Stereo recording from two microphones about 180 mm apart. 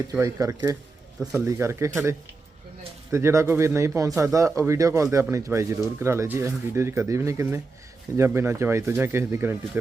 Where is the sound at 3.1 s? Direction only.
15° right (ahead or behind).